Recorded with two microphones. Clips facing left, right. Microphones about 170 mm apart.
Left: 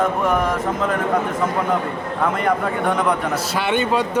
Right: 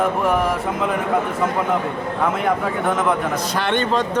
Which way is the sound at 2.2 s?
Centre (ahead or behind).